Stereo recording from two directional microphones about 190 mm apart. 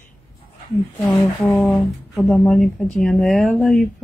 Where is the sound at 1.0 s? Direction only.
10° left (ahead or behind).